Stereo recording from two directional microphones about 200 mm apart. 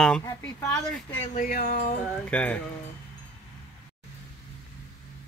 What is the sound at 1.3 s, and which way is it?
Speech, 45° left (ahead or behind).